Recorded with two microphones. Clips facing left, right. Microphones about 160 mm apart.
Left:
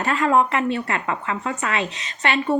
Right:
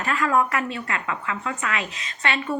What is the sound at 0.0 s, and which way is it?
A woman's voice, 30° left (ahead or behind).